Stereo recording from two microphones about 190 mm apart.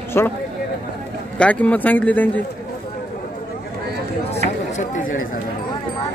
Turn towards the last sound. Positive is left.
turn(degrees=40)  # may be behind; listen again after turning